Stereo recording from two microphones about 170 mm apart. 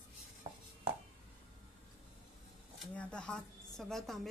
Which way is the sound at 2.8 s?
5° left (ahead or behind).